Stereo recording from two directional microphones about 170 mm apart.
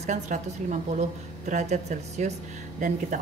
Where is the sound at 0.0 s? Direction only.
45° right (ahead or behind).